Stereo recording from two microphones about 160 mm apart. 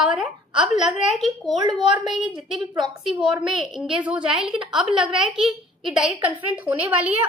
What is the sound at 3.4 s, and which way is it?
A woman's voice, 5° right (ahead or behind).